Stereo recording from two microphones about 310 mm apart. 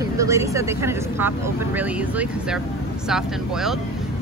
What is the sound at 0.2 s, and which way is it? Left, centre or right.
Speech, centre.